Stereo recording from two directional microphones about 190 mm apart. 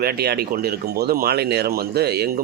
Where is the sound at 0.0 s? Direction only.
55° right (ahead or behind).